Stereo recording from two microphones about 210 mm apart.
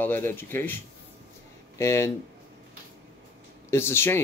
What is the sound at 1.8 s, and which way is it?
Speech, 15° left (ahead or behind).